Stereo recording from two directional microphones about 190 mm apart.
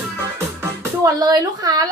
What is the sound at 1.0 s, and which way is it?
Speech, 20° right (ahead or behind).